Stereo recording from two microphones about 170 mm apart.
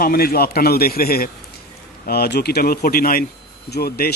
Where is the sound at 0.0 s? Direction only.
60° left (ahead or behind).